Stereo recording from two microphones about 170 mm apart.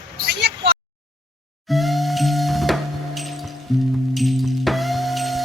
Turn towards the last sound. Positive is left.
turn(degrees=0)  # may be behind; listen again after turning